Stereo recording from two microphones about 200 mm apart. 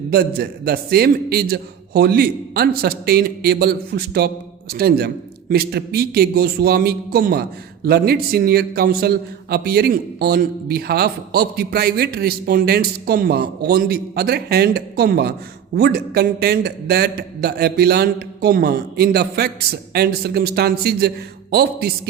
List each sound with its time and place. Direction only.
0.1 s a man's voice: 50° right (ahead or behind)